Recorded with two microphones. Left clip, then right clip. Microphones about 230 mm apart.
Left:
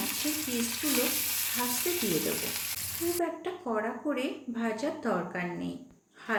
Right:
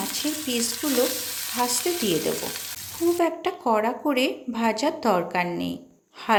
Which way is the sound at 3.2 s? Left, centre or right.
Right.